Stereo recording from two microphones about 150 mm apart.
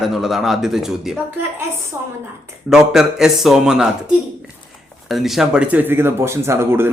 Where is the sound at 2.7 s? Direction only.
5° right (ahead or behind).